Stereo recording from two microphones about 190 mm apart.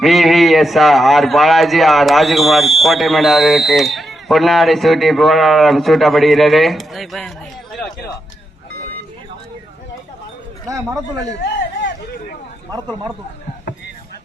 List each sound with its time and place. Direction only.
0.0 s a man's voice: centre (ahead or behind)
10.7 s a man's voice: 15° right (ahead or behind)
12.7 s speech: 20° right (ahead or behind)